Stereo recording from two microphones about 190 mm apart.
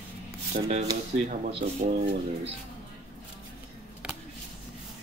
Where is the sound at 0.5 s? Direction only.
40° right (ahead or behind).